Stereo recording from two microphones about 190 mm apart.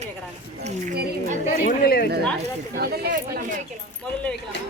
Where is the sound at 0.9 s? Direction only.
55° right (ahead or behind).